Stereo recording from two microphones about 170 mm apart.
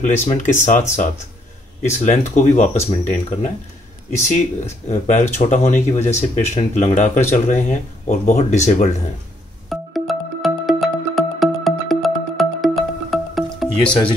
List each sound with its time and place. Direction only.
0.0 s speech: 45° left (ahead or behind)
9.7 s music: centre (ahead or behind)